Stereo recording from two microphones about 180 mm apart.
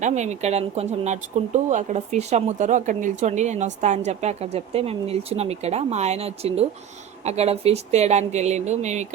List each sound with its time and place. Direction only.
0.0 s speech: 40° right (ahead or behind)